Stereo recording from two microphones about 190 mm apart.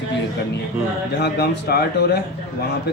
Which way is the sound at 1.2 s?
60° left (ahead or behind).